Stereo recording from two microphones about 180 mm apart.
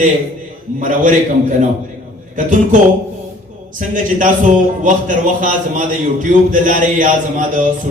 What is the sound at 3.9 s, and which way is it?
Speech, 45° right (ahead or behind).